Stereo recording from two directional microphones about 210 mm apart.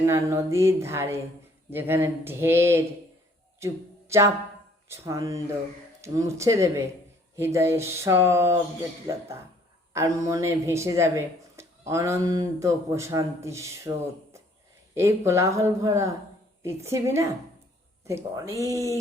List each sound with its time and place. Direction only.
0.0 s speech: 15° right (ahead or behind)
9.9 s speech: 15° right (ahead or behind)
14.9 s speech: 15° right (ahead or behind)